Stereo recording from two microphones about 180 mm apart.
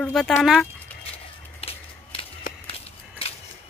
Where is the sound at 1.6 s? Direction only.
30° left (ahead or behind).